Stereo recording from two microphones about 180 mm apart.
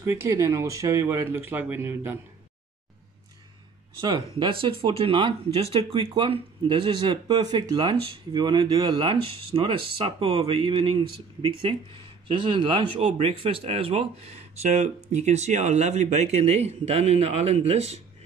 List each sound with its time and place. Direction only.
0.0 s speech: 15° right (ahead or behind)
4.4 s speech: 30° right (ahead or behind)